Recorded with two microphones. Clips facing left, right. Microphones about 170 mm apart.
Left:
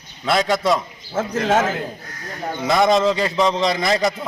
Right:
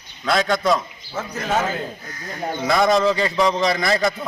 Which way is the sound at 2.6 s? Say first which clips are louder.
Left 1 dB; centre (ahead or behind).